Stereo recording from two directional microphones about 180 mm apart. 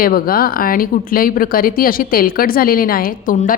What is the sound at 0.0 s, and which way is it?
Speech, 55° left (ahead or behind).